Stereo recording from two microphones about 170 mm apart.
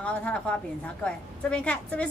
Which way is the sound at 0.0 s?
5° left (ahead or behind).